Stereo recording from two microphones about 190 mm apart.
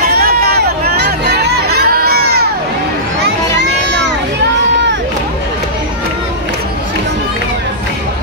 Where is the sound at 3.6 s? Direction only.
65° right (ahead or behind).